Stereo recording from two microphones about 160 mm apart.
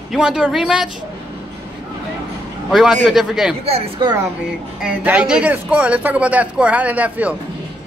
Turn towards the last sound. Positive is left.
turn(degrees=-10)  # may be behind; listen again after turning